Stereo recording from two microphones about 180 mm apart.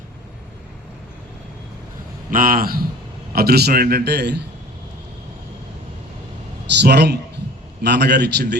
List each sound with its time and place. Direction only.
2.3 s a man's voice: 50° right (ahead or behind); by 4.4 s 65° right (ahead or behind)
6.7 s a man's voice: 65° right (ahead or behind)